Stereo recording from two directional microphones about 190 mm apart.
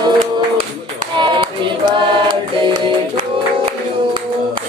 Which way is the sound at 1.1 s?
25° right (ahead or behind).